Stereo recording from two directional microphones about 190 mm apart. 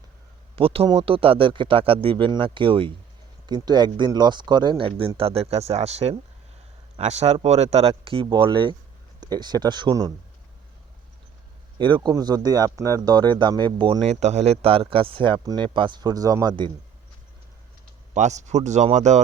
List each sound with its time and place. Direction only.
0.5 s speech: 30° right (ahead or behind)
11.8 s speech: 25° right (ahead or behind)
18.1 s speech: 40° right (ahead or behind)